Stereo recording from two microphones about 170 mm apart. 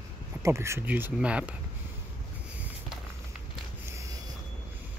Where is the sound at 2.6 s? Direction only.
10° right (ahead or behind).